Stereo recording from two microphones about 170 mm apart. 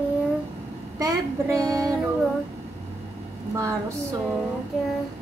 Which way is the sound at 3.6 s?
15° right (ahead or behind).